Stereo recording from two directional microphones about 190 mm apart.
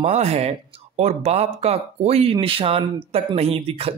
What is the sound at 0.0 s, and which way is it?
Speech, 35° right (ahead or behind).